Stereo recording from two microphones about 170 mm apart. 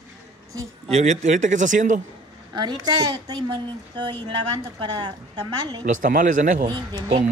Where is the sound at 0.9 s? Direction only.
45° right (ahead or behind).